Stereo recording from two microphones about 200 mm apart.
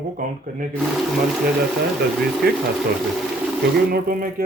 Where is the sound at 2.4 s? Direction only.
50° right (ahead or behind).